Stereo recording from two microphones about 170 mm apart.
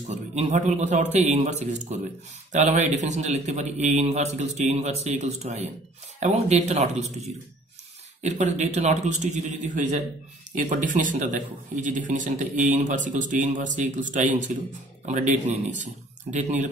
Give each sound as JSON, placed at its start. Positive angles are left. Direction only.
{"t": 0.0, "sound": "speech", "side_deg": -40}
{"t": 8.2, "sound": "speech", "side_deg": -45}